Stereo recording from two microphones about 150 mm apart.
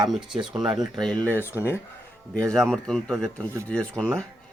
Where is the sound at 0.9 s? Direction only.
5° left (ahead or behind).